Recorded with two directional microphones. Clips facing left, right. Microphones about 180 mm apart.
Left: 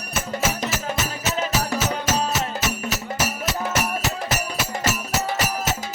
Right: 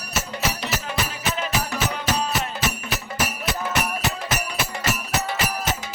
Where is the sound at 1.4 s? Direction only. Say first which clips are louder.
Left 3 dB; 40° left (ahead or behind).